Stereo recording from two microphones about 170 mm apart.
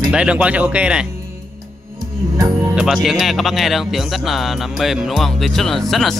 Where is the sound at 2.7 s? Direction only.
5° right (ahead or behind).